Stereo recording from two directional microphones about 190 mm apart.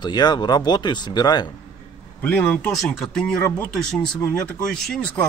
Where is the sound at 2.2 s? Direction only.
5° left (ahead or behind).